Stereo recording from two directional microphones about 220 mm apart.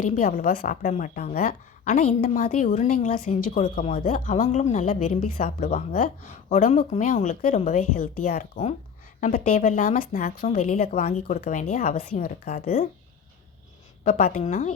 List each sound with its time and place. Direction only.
0.0 s speech: 40° left (ahead or behind)
14.0 s speech: 40° left (ahead or behind)